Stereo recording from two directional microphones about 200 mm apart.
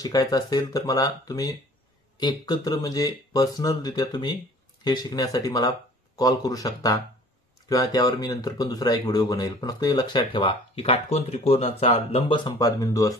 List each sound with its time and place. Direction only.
0.0 s speech: 20° left (ahead or behind)